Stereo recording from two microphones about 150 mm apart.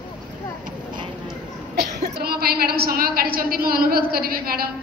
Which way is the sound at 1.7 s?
90° right.